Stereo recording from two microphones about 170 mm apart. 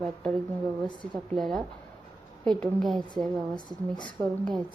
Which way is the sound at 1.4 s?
Centre (ahead or behind).